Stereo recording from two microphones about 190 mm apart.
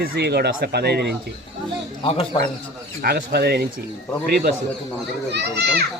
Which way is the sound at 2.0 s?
30° left (ahead or behind).